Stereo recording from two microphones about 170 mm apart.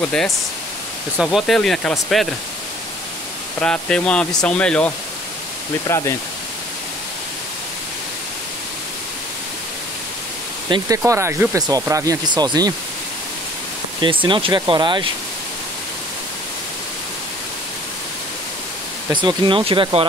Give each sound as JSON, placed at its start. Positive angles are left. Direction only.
{"t": 1.1, "sound": "speech", "side_deg": -5}
{"t": 3.6, "sound": "speech", "side_deg": 5}
{"t": 11.0, "sound": "speech", "side_deg": -15}
{"t": 14.0, "sound": "speech", "side_deg": -30}
{"t": 19.1, "sound": "speech", "side_deg": -30}